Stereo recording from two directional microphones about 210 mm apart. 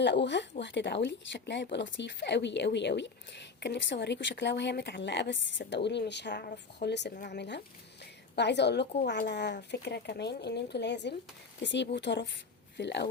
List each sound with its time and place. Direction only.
0.0 s speech: 55° left (ahead or behind)